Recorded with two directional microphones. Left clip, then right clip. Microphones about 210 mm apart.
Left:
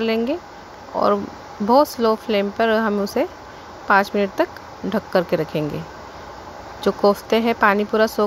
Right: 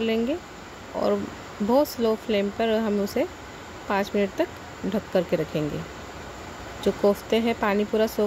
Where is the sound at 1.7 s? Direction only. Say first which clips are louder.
Left 6 dB; 10° left (ahead or behind).